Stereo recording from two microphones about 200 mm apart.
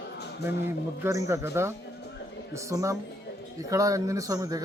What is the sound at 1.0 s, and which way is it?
A man's voice, 15° right (ahead or behind).